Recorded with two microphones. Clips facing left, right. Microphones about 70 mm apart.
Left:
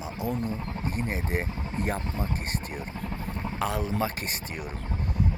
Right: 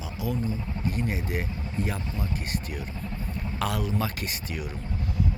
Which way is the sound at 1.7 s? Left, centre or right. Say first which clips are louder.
Left 1 dB; left.